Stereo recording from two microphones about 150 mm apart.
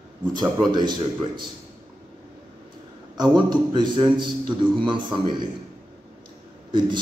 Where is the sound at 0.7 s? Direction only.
30° right (ahead or behind).